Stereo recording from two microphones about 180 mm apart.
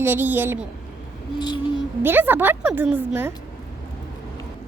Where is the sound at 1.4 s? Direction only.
25° left (ahead or behind).